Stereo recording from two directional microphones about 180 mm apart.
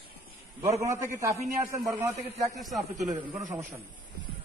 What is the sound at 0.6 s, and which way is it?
A man's voice, 15° right (ahead or behind).